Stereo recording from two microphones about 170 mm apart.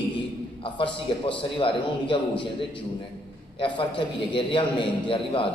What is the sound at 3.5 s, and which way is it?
A man's voice, 30° left (ahead or behind).